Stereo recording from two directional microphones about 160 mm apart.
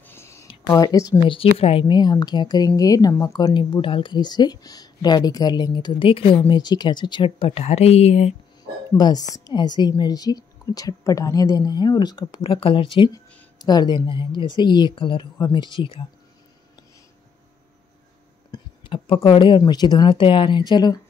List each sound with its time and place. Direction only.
0.0 s a sound: 15° left (ahead or behind)
0.7 s a woman's voice: 20° left (ahead or behind); by 8.4 s 40° left (ahead or behind)
8.9 s a woman's voice: 25° left (ahead or behind)
18.5 s speech: 35° left (ahead or behind)